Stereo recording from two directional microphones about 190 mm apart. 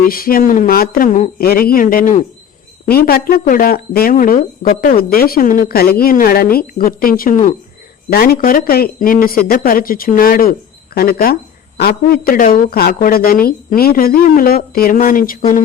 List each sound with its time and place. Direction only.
0.1 s a woman's voice: 50° left (ahead or behind)